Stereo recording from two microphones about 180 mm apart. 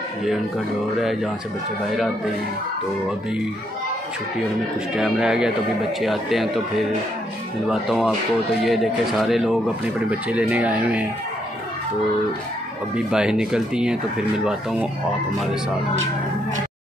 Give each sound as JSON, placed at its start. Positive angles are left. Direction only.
{"t": 4.9, "sound": "speech", "side_deg": 0}
{"t": 7.6, "sound": "speech", "side_deg": 0}
{"t": 12.9, "sound": "speech", "side_deg": -5}